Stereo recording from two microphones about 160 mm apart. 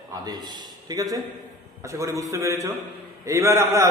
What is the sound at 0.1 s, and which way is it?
A man's voice, 25° right (ahead or behind).